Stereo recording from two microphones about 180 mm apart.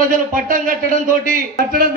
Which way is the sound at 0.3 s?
50° right (ahead or behind).